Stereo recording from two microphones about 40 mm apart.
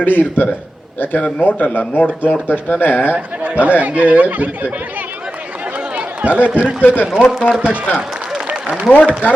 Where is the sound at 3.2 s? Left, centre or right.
Right.